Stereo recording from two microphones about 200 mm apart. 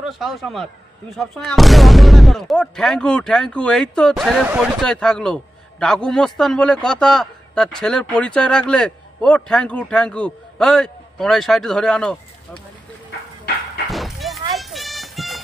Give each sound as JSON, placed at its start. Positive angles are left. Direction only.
{"t": 0.0, "sound": "speech", "side_deg": 0}
{"t": 13.8, "sound": "a sound", "side_deg": 0}
{"t": 14.5, "sound": "music", "side_deg": 0}